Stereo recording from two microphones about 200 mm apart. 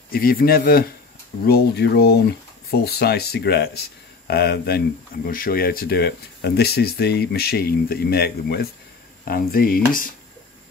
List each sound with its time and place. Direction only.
0.1 s speech: 50° left (ahead or behind)